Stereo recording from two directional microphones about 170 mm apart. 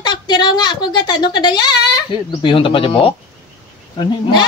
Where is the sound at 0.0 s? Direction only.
25° left (ahead or behind).